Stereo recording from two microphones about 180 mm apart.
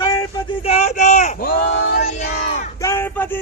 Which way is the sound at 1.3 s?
55° left (ahead or behind).